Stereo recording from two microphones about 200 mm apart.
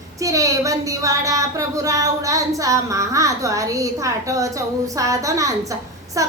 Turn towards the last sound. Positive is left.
turn(degrees=-15)  # may be behind; listen again after turning